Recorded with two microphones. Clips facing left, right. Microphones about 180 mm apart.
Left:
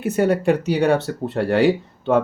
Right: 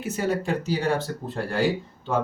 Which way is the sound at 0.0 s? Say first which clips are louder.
Left 8 dB; 60° left (ahead or behind).